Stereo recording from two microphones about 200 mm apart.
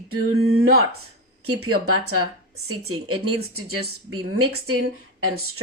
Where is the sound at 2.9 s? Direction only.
90° right.